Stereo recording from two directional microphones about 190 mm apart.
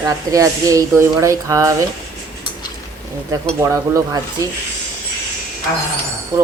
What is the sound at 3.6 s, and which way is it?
Speech, 15° right (ahead or behind).